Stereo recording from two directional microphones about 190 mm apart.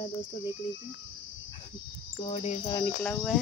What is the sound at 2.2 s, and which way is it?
Cricket, 30° left (ahead or behind).